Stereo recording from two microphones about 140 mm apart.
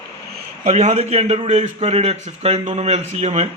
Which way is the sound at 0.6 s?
55° right (ahead or behind).